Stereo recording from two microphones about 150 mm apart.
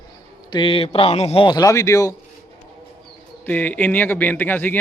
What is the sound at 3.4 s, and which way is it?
A man's voice, 10° left (ahead or behind).